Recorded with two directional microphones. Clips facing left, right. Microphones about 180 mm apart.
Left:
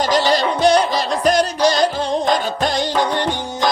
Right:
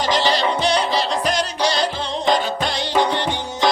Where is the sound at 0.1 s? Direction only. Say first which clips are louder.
Left 2 dB; 45° left (ahead or behind).